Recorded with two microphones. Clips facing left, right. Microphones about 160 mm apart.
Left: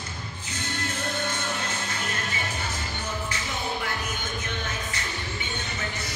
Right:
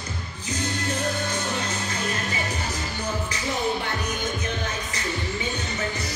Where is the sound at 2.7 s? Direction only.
35° right (ahead or behind).